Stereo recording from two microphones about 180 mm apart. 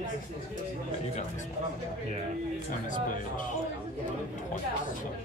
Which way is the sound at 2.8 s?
45° left (ahead or behind).